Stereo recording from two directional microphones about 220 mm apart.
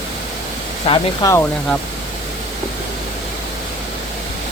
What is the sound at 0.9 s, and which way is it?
Speech, 15° left (ahead or behind).